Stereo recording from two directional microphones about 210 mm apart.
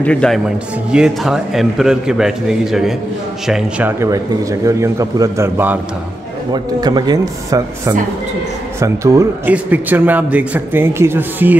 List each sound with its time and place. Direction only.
0.0 s a man's voice: 5° left (ahead or behind)
4.0 s a man's voice: 15° right (ahead or behind)